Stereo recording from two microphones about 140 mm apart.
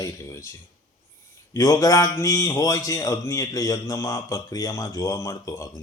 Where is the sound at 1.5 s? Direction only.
25° left (ahead or behind).